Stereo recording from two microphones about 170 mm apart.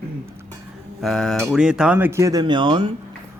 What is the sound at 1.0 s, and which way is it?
Speech, centre (ahead or behind).